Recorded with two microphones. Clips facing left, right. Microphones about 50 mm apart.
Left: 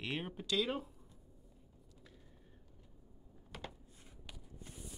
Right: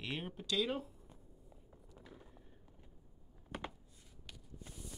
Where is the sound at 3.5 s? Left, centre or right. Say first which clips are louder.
Right 4 dB; right.